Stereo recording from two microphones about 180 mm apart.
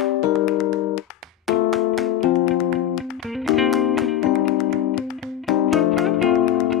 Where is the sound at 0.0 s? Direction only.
Centre (ahead or behind).